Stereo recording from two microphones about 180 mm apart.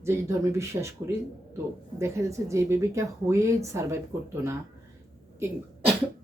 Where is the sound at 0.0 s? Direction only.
15° right (ahead or behind).